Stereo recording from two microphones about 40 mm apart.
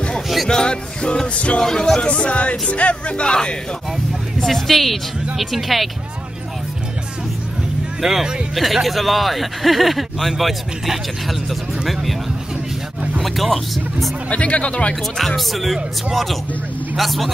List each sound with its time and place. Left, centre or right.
0.5 s music: left
1.6 s speech: centre
2.0 s music: left
2.7 s speech: left
4.4 s speech: centre
8.0 s speech: centre
8.5 s speech: centre
13.2 s speech: centre
14.3 s speech: left
15.1 s speech: centre